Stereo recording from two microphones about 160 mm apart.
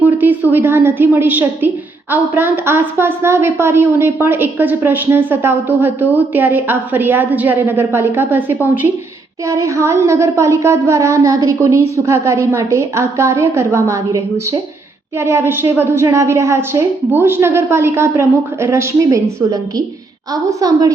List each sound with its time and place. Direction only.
0.0 s a woman's voice: 10° right (ahead or behind)